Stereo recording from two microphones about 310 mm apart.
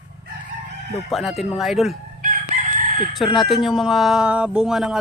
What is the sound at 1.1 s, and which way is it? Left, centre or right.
Speech, centre.